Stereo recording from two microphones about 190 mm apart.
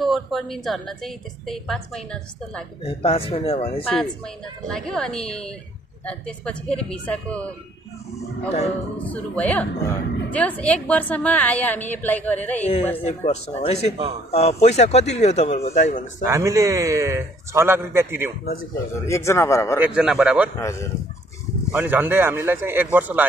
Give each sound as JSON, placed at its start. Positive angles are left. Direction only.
{"t": 0.0, "sound": "a woman's voice", "side_deg": 0}
{"t": 2.8, "sound": "speech", "side_deg": 30}
{"t": 3.8, "sound": "a woman's voice", "side_deg": 5}
{"t": 9.0, "sound": "a woman's voice", "side_deg": 10}
{"t": 12.9, "sound": "speech", "side_deg": 35}
{"t": 16.3, "sound": "a man's voice", "side_deg": -15}
{"t": 18.9, "sound": "a woman's voice", "side_deg": 15}
{"t": 19.8, "sound": "a woman's voice", "side_deg": -5}
{"t": 20.5, "sound": "a woman's voice", "side_deg": 15}
{"t": 21.7, "sound": "a man's voice", "side_deg": -10}